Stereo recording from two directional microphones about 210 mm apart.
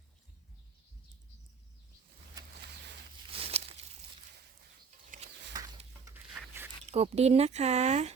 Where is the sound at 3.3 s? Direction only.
30° right (ahead or behind).